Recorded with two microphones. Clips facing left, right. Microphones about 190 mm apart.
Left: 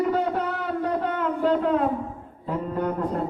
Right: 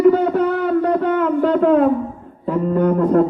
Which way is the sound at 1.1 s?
70° right (ahead or behind).